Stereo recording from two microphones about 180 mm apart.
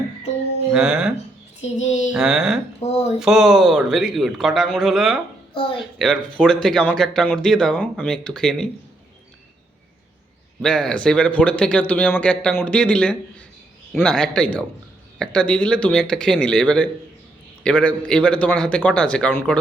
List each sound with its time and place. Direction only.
0.7 s speech: 5° right (ahead or behind)
1.6 s a child's voice: 40° left (ahead or behind)
2.1 s speech: 5° right (ahead or behind)
2.8 s a sound: 40° left (ahead or behind)
3.2 s speech: centre (ahead or behind)
10.6 s speech: 5° left (ahead or behind)